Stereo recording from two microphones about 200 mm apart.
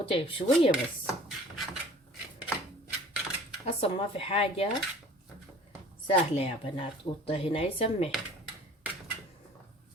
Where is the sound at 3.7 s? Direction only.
30° left (ahead or behind).